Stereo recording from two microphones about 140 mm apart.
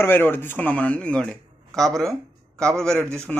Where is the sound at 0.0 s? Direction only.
15° left (ahead or behind).